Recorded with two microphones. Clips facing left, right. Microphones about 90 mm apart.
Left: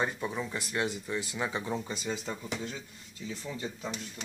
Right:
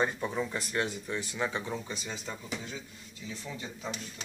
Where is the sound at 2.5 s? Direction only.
50° left (ahead or behind).